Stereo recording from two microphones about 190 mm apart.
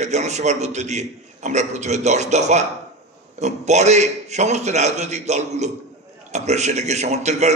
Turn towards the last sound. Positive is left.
turn(degrees=-35)  # may be behind; listen again after turning